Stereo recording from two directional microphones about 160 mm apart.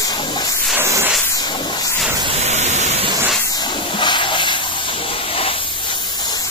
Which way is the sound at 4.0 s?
30° left (ahead or behind).